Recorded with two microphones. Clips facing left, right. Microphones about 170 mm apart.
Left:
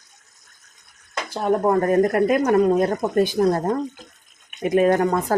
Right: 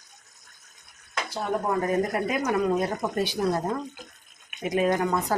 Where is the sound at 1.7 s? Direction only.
55° left (ahead or behind).